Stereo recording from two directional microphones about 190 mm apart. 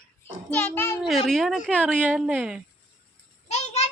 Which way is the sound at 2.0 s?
5° right (ahead or behind).